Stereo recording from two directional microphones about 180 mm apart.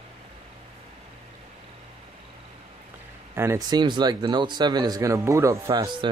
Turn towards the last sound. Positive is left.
turn(degrees=-25)  # may be behind; listen again after turning